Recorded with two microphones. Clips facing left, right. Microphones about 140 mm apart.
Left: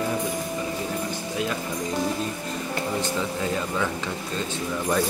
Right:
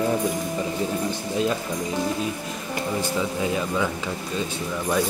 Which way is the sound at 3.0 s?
10° right (ahead or behind).